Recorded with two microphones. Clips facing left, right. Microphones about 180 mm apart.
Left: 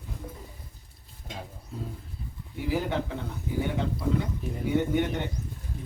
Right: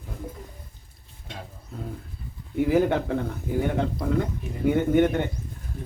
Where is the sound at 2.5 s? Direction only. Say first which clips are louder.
Right 8 dB; 55° right (ahead or behind).